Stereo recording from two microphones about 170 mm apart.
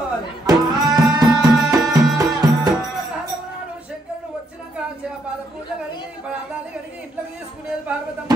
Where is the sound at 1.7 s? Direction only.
20° right (ahead or behind).